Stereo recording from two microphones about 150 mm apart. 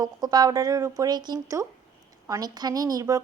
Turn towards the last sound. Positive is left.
turn(degrees=-25)  # may be behind; listen again after turning